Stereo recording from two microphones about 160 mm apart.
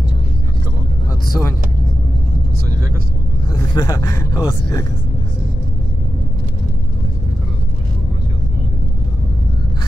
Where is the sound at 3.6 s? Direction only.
25° left (ahead or behind).